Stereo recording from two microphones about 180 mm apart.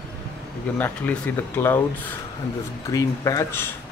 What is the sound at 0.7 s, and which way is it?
Speech, 10° left (ahead or behind).